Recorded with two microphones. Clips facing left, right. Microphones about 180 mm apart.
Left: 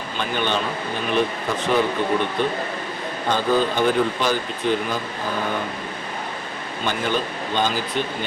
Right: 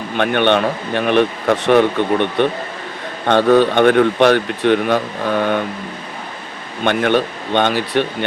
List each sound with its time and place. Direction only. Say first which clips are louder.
0.2 s a man's voice: right 9 dB; 65° right (ahead or behind)
6.8 s a man's voice: right 8 dB; 65° right (ahead or behind)